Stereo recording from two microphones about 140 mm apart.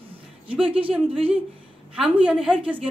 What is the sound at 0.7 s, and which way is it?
Speech, 40° right (ahead or behind).